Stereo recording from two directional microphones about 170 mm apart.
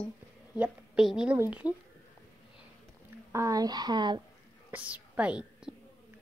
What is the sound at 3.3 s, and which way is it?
Speech, 20° right (ahead or behind).